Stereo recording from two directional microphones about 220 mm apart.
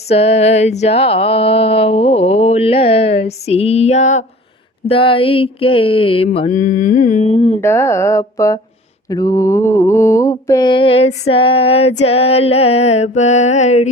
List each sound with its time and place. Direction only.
0.1 s mantra: 30° left (ahead or behind)
7.6 s mantra: 10° left (ahead or behind); by 13.9 s 30° left (ahead or behind)